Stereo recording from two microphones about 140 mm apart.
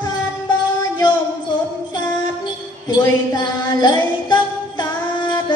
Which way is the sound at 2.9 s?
30° left (ahead or behind).